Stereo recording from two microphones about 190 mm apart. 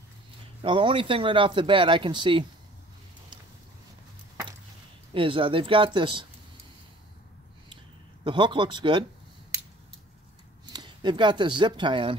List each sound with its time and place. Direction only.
0.6 s speech: 25° right (ahead or behind)
5.1 s speech: 25° right (ahead or behind)
7.7 s a sound: 25° right (ahead or behind)
10.7 s speech: 25° right (ahead or behind)